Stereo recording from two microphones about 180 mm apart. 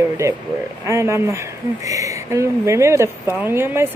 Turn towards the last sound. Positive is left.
turn(degrees=-10)  # may be behind; listen again after turning